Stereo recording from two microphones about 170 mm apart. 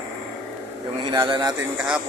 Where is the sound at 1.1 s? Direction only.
25° right (ahead or behind).